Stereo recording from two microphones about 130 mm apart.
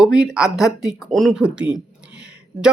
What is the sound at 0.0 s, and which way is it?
Speech, 5° right (ahead or behind).